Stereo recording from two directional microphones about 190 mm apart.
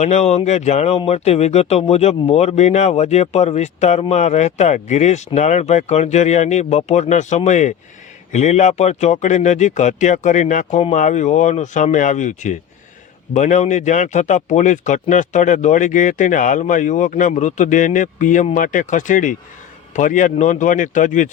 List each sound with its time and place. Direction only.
0.0 s speech: 35° left (ahead or behind)